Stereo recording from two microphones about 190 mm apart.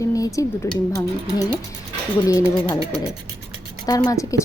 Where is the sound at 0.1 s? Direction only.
15° left (ahead or behind).